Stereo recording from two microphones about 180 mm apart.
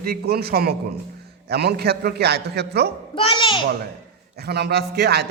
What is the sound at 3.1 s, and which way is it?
Speech, 30° left (ahead or behind).